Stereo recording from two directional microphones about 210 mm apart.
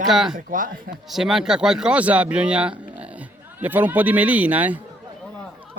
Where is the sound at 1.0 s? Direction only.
Centre (ahead or behind).